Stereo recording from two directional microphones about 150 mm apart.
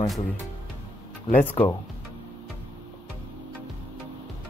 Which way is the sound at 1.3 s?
10° left (ahead or behind).